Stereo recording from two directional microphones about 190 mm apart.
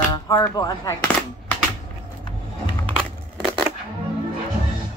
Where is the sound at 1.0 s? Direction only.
10° left (ahead or behind).